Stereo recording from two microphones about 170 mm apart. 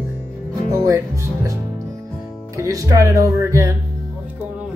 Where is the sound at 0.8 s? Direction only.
20° right (ahead or behind).